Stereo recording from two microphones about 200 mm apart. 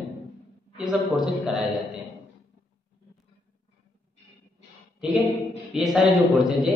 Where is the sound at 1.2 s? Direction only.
Centre (ahead or behind).